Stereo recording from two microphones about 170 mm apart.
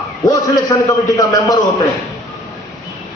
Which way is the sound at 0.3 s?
20° left (ahead or behind).